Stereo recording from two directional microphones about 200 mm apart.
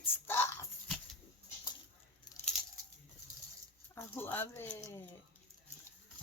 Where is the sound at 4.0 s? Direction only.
10° left (ahead or behind).